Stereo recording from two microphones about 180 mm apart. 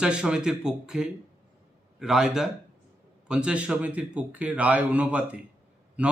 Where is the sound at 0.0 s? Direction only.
5° right (ahead or behind).